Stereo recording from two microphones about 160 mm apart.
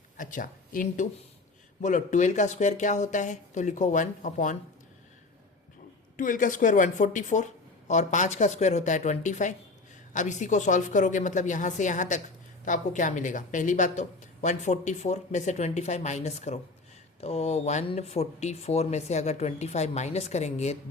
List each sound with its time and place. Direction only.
0.2 s a woman's voice: 55° left (ahead or behind)
6.1 s a woman's voice: 55° left (ahead or behind)